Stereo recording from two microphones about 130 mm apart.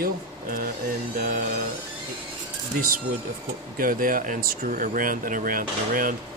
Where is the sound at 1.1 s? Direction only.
90° right.